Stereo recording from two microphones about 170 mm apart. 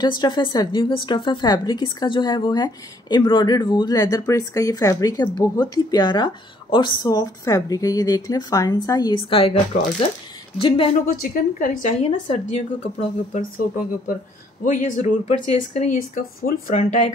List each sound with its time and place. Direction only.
0.0 s a woman's voice: 25° left (ahead or behind)
11.1 s a woman's voice: 55° left (ahead or behind)
16.3 s a woman's voice: 55° left (ahead or behind)